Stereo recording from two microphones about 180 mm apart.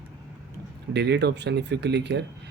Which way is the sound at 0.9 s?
70° right (ahead or behind).